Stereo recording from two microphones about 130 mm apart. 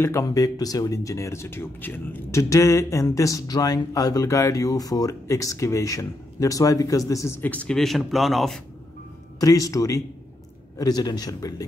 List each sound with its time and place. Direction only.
0.0 s speech: 25° left (ahead or behind); by 8.5 s centre (ahead or behind)
9.4 s speech: 25° left (ahead or behind)